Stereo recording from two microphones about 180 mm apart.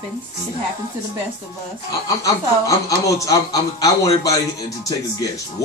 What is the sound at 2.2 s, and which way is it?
Speech, 20° left (ahead or behind).